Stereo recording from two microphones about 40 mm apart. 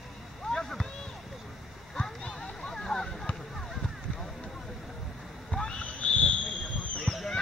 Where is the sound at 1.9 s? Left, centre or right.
Left.